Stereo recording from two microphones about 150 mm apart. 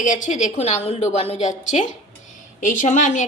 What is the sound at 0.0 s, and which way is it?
A woman's voice, 55° left (ahead or behind).